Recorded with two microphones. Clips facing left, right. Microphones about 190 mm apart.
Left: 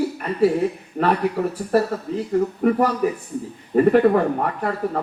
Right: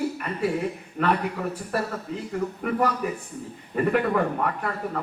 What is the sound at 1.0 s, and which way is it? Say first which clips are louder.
Speech: left 4 dB; 45° left (ahead or behind).